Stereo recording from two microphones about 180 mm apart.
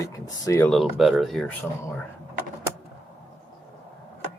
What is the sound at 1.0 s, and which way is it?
Speech, centre (ahead or behind).